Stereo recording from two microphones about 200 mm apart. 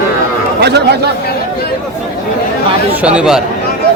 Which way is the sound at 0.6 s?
55° right (ahead or behind).